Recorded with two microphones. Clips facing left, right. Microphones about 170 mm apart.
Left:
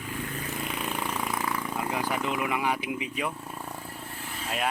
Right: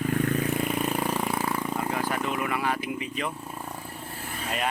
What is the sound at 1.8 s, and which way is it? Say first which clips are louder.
Speech: right 1 dB; 15° left (ahead or behind).